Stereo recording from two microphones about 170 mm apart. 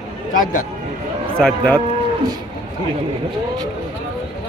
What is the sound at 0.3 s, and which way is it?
Speech, 55° left (ahead or behind).